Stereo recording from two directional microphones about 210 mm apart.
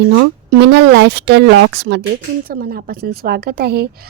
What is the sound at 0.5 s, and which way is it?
Speech, 55° right (ahead or behind).